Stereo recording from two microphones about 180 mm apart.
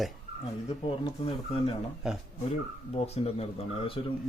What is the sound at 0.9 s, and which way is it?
Speech, 30° left (ahead or behind).